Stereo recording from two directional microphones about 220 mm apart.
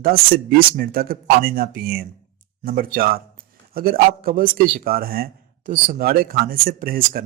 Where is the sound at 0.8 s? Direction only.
40° right (ahead or behind).